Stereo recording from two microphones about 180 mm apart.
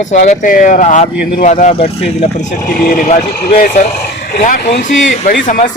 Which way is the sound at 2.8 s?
55° left (ahead or behind).